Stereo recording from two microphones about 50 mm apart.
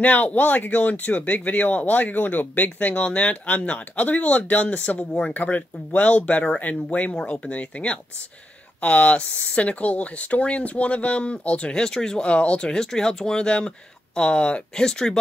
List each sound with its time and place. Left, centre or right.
0.0 s speech: left; by 12.3 s centre
12.3 s speech: left